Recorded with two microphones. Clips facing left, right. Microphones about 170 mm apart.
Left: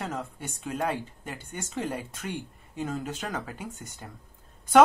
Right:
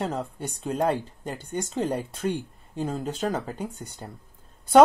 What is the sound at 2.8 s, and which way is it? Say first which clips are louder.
Speech: right 4 dB; 35° right (ahead or behind).